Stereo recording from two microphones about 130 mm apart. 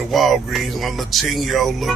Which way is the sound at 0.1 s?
Centre (ahead or behind).